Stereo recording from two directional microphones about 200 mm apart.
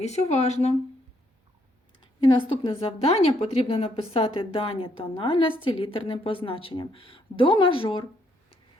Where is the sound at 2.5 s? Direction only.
25° left (ahead or behind).